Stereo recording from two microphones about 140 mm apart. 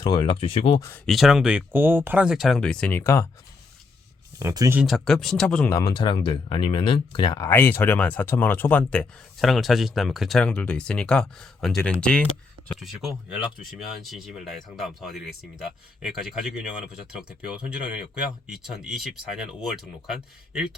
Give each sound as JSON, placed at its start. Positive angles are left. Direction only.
{"t": 0.0, "sound": "speech", "side_deg": 40}
{"t": 0.8, "sound": "speech", "side_deg": 15}
{"t": 1.0, "sound": "speech", "side_deg": 0}
{"t": 4.4, "sound": "speech", "side_deg": -20}
{"t": 4.8, "sound": "speech", "side_deg": 0}
{"t": 5.6, "sound": "speech", "side_deg": 20}
{"t": 6.0, "sound": "speech", "side_deg": 35}
{"t": 7.3, "sound": "speech", "side_deg": 20}